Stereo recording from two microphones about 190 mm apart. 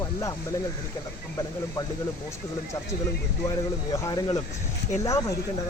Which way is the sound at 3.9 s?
20° left (ahead or behind).